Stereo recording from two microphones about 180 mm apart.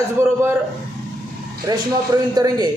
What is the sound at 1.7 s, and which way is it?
Speech, 20° right (ahead or behind).